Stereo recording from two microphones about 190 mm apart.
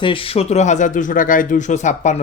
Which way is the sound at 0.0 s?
25° left (ahead or behind).